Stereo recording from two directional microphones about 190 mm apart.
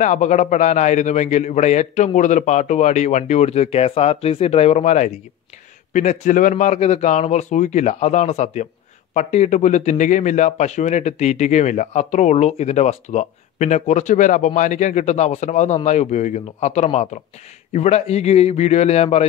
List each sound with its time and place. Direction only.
0.0 s speech: 40° left (ahead or behind)